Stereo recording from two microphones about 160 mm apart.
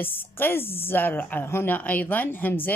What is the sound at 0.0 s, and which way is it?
A woman's voice, 15° left (ahead or behind).